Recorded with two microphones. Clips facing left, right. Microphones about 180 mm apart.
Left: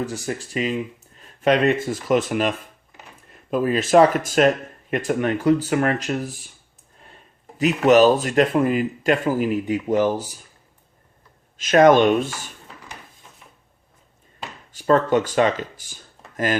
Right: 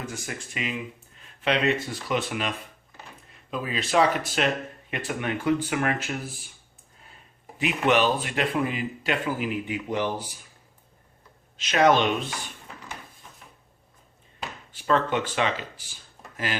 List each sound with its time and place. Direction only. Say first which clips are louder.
0.0 s speech: left 8 dB; 35° left (ahead or behind)
7.9 s speech: left 9 dB; 40° left (ahead or behind)
11.5 s speech: left 7 dB; 50° left (ahead or behind)
14.7 s speech: left 7 dB; 40° left (ahead or behind)